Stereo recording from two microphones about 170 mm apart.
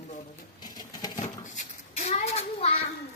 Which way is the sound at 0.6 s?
25° left (ahead or behind).